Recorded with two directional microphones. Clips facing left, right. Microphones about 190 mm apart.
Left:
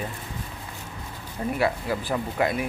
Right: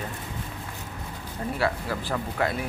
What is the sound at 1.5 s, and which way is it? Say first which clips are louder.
Speech: left 2 dB; 15° left (ahead or behind).